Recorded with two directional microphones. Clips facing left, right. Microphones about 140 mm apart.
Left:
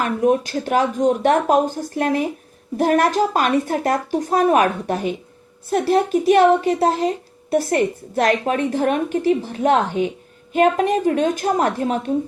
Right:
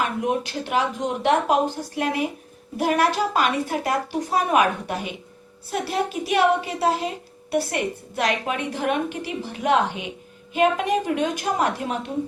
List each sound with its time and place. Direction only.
0.0 s a woman's voice: 45° left (ahead or behind)